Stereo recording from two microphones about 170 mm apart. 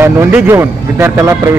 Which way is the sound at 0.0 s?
15° right (ahead or behind).